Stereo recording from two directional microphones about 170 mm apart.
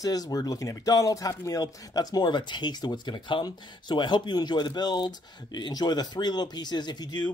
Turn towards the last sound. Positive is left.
turn(degrees=25)  # may be behind; listen again after turning